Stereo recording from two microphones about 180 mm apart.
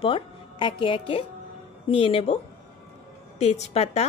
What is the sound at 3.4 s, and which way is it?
Speech, 35° left (ahead or behind).